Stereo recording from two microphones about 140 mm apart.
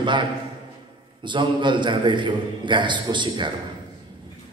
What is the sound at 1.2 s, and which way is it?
A man's voice, 35° right (ahead or behind).